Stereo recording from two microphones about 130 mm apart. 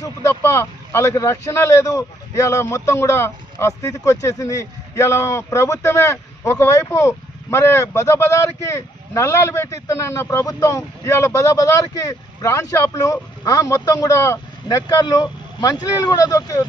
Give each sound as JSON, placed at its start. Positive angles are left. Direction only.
{"t": 0.0, "sound": "speech", "side_deg": 20}